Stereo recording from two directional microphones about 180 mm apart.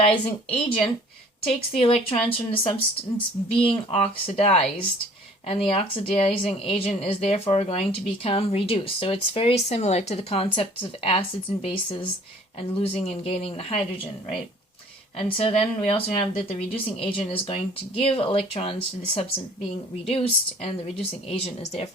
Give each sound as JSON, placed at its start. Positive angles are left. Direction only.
{"t": 0.5, "sound": "a woman's voice", "side_deg": 30}
{"t": 15.3, "sound": "a woman's voice", "side_deg": 30}